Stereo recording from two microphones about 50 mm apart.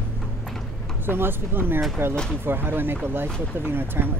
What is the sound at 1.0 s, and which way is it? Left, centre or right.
Speech, right.